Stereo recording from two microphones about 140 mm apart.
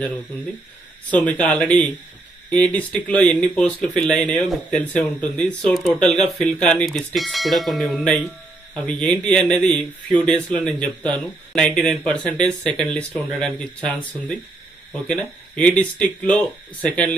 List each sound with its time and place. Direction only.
1.3 s a man's voice: 5° left (ahead or behind)
15.2 s speech: 5° left (ahead or behind)